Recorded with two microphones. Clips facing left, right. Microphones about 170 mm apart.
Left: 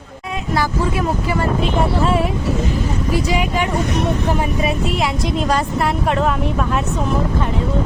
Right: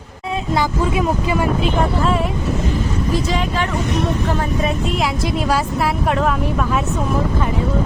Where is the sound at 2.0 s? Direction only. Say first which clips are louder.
Left 1 dB; centre (ahead or behind).